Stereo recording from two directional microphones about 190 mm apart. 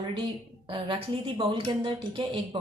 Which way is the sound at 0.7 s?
25° right (ahead or behind).